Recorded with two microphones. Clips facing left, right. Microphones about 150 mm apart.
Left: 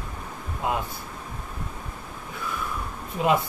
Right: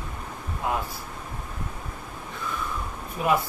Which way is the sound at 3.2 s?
20° left (ahead or behind).